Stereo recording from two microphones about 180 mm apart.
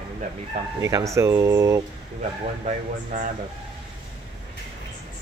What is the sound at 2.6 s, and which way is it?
Speech, 40° right (ahead or behind).